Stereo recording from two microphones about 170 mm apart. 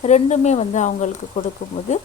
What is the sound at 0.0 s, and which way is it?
Speech, 40° left (ahead or behind).